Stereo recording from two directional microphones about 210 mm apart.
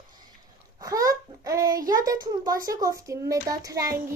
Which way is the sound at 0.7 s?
15° right (ahead or behind).